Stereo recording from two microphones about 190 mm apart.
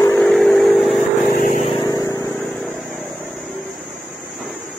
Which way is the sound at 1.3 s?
45° left (ahead or behind).